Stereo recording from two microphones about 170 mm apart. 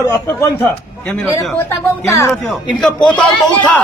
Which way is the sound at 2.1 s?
15° left (ahead or behind).